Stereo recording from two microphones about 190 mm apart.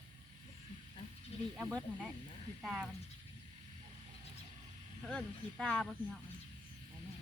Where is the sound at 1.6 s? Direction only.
Centre (ahead or behind).